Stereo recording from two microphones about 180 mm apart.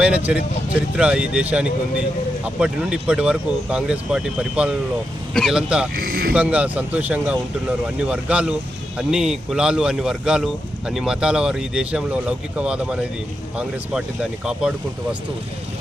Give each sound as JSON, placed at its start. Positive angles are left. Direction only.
{"t": 0.0, "sound": "speech", "side_deg": -5}
{"t": 5.9, "sound": "speech", "side_deg": -55}
{"t": 6.3, "sound": "speech", "side_deg": -5}